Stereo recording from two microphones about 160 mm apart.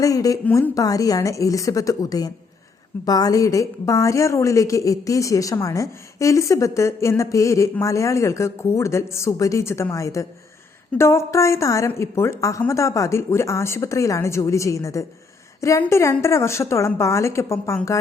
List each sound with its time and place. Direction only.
0.0 s a woman's voice: 20° left (ahead or behind)